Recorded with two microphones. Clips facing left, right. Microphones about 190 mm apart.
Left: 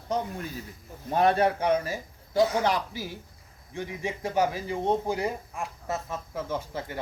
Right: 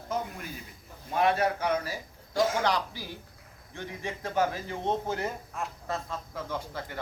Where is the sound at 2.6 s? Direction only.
20° left (ahead or behind).